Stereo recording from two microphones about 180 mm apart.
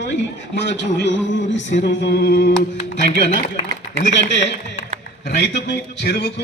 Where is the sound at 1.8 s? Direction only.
70° left (ahead or behind).